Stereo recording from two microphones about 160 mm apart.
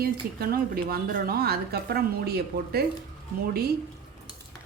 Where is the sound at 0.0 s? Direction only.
70° right (ahead or behind).